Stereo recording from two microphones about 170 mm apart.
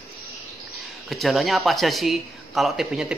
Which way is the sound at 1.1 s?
Centre (ahead or behind).